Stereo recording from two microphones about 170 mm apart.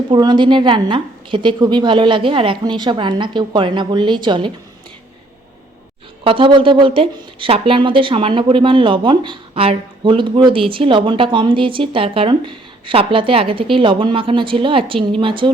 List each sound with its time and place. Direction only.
0.1 s a woman's voice: 25° right (ahead or behind)
6.2 s speech: 30° right (ahead or behind)